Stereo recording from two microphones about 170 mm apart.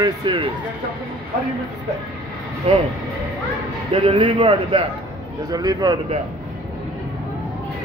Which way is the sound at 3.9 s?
30° right (ahead or behind).